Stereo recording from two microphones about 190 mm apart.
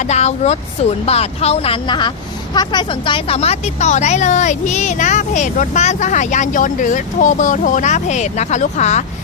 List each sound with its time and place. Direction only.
0.1 s speech: 35° left (ahead or behind)